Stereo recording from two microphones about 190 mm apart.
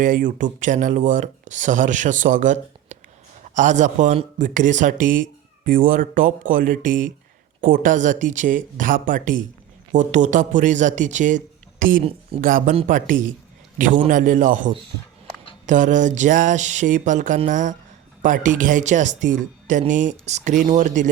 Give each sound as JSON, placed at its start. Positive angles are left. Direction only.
{"t": 0.0, "sound": "speech", "side_deg": -45}
{"t": 14.1, "sound": "speech", "side_deg": -45}